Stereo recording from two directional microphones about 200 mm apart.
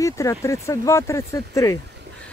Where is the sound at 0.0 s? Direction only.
15° left (ahead or behind).